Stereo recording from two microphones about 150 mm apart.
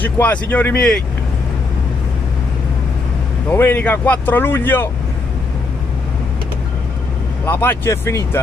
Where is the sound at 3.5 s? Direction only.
15° left (ahead or behind).